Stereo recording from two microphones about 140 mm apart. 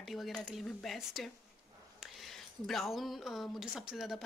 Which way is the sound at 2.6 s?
Centre (ahead or behind).